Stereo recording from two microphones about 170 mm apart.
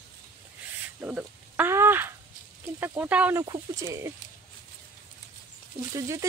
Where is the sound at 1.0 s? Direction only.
10° right (ahead or behind).